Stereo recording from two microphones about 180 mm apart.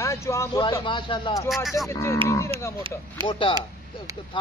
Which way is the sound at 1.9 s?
15° left (ahead or behind).